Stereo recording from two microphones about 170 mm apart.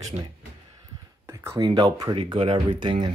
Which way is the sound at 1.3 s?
15° right (ahead or behind).